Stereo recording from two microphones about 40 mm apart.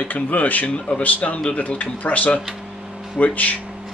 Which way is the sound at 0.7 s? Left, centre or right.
Left.